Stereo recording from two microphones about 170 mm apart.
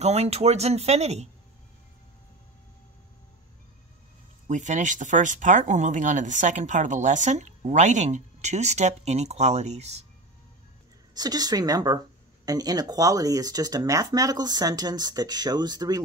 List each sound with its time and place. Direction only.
0.0 s speech: 40° right (ahead or behind)
4.5 s speech: 45° right (ahead or behind)
11.1 s speech: 25° right (ahead or behind)